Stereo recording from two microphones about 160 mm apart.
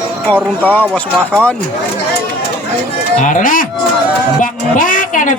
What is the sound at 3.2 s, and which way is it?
Speech, 55° left (ahead or behind).